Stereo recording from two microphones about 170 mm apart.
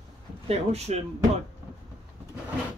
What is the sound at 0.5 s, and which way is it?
Speech, 40° right (ahead or behind).